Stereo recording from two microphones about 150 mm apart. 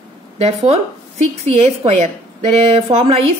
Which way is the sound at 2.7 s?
45° right (ahead or behind).